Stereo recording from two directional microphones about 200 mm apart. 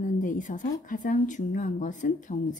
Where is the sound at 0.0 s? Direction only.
40° left (ahead or behind).